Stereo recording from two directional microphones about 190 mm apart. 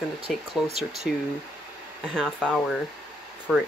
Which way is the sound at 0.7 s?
35° right (ahead or behind).